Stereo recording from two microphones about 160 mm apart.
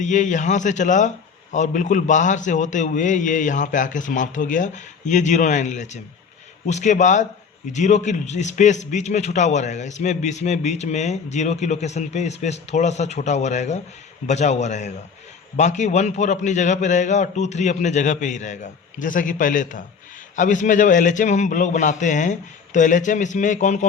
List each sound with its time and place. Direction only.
0.0 s a man's voice: 50° left (ahead or behind)